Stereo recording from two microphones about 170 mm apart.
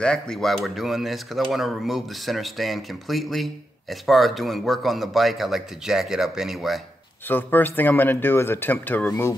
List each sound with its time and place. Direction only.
0.0 s speech: 5° left (ahead or behind)
7.2 s speech: 10° left (ahead or behind)